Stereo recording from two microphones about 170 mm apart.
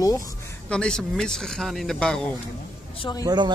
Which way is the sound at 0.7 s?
5° left (ahead or behind).